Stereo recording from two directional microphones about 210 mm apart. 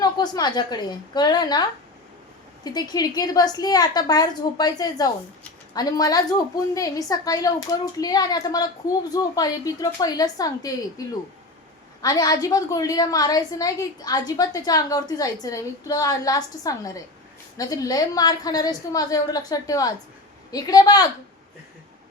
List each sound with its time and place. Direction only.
0.0 s a woman's voice: 20° left (ahead or behind)
2.6 s a woman's voice: 20° left (ahead or behind)
12.0 s a woman's voice: 15° left (ahead or behind)